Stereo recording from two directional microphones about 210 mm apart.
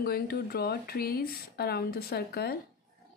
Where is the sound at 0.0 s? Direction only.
45° left (ahead or behind).